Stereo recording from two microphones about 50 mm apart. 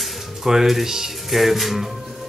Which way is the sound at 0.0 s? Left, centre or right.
Centre.